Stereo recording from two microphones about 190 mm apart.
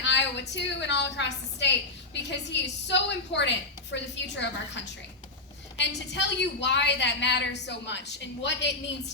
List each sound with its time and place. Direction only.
0.0 s a woman's voice: 70° left (ahead or behind)